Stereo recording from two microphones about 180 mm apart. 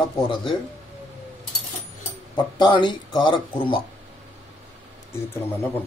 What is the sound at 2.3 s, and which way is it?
Speech, 25° left (ahead or behind).